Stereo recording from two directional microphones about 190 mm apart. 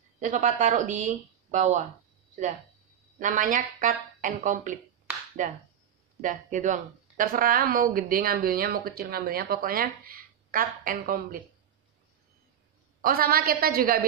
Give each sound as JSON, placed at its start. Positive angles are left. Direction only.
{"t": 0.2, "sound": "speech", "side_deg": -45}
{"t": 3.2, "sound": "a woman's voice", "side_deg": -45}
{"t": 13.0, "sound": "a woman's voice", "side_deg": -50}